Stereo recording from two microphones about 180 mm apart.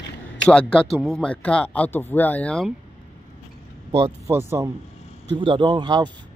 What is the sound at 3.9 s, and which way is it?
Speech, 15° right (ahead or behind).